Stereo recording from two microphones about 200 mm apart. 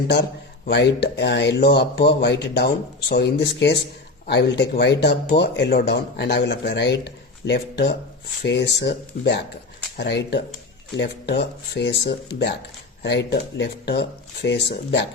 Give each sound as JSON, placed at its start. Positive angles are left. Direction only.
{"t": 0.1, "sound": "speech", "side_deg": 55}